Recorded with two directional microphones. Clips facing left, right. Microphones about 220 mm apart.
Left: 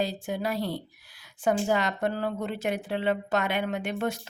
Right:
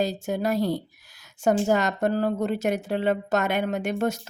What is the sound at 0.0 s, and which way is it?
A woman's voice, 45° right (ahead or behind).